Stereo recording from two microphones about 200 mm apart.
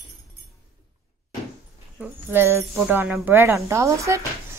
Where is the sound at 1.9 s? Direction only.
10° right (ahead or behind).